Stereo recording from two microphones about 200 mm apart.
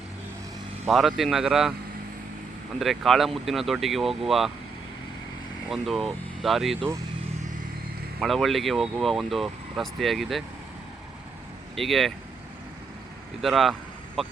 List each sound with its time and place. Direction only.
0.9 s speech: centre (ahead or behind)
2.7 s speech: centre (ahead or behind)
5.6 s speech: centre (ahead or behind)
8.2 s speech: centre (ahead or behind)
11.7 s speech: centre (ahead or behind)
13.4 s speech: centre (ahead or behind)